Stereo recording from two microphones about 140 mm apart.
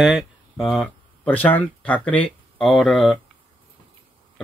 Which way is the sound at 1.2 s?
10° left (ahead or behind).